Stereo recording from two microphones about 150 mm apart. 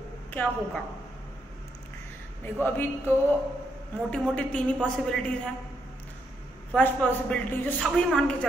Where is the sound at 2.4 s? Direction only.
15° left (ahead or behind).